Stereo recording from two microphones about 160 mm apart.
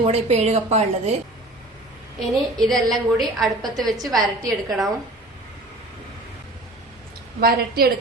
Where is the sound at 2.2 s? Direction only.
Centre (ahead or behind).